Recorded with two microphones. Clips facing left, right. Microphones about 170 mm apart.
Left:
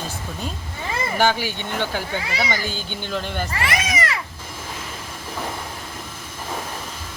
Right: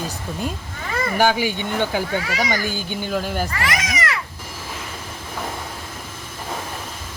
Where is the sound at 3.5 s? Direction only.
30° left (ahead or behind).